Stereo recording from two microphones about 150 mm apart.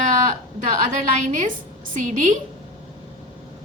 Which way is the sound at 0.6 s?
50° right (ahead or behind).